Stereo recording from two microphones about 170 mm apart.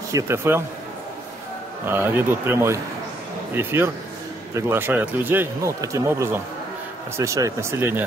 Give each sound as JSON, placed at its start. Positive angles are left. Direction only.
{"t": 0.1, "sound": "speech", "side_deg": -15}
{"t": 1.9, "sound": "speech", "side_deg": -15}